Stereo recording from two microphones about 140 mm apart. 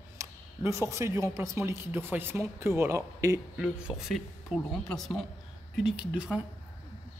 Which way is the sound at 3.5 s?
5° right (ahead or behind).